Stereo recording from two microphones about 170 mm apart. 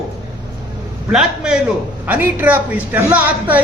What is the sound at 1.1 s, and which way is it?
A man's voice, 5° right (ahead or behind).